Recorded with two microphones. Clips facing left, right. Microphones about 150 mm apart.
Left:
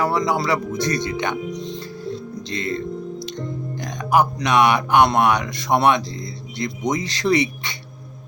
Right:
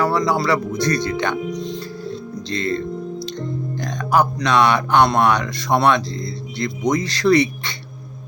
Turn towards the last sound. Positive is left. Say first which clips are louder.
# right 4 dB
turn(degrees=15)  # may be behind; listen again after turning